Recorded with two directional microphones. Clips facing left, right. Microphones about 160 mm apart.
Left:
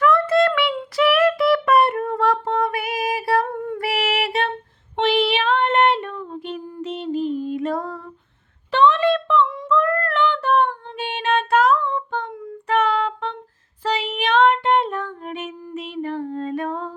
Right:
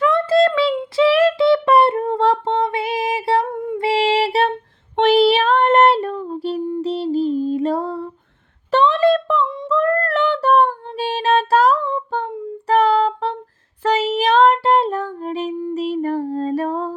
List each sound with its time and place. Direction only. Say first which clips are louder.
0.0 s a sound: right 2 dB; 25° right (ahead or behind)
0.7 s child singing: right 4 dB; 25° right (ahead or behind)
3.4 s child singing: right 3 dB; 15° right (ahead or behind)
3.8 s child singing: right 7 dB; 25° right (ahead or behind)
6.8 s music: right 2 dB; 35° right (ahead or behind)
8.7 s child singing: right 2 dB; 35° right (ahead or behind)
9.6 s female singing: right 2 dB; 30° right (ahead or behind)
10.0 s child singing: right 3 dB; 40° right (ahead or behind)